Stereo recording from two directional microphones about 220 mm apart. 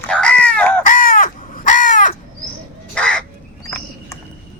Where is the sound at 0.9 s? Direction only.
40° left (ahead or behind).